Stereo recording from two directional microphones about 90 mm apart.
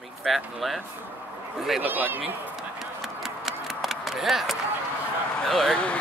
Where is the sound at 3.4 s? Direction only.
Centre (ahead or behind).